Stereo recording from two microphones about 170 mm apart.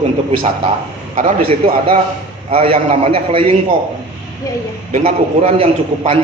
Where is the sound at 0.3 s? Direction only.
35° right (ahead or behind).